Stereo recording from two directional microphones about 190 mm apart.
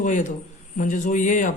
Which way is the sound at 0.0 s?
40° left (ahead or behind).